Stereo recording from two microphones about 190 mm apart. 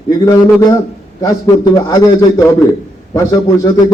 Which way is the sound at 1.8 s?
20° left (ahead or behind).